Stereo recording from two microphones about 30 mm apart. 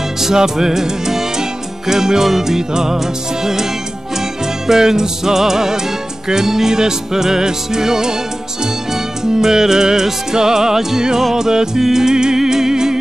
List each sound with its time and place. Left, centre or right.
0.2 s music: centre
4.6 s music: centre